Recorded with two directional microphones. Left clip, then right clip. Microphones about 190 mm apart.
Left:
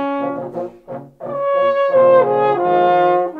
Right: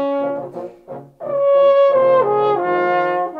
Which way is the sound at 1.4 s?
25° right (ahead or behind).